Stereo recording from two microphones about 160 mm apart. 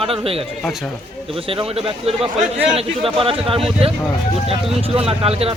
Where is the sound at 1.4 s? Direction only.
35° right (ahead or behind).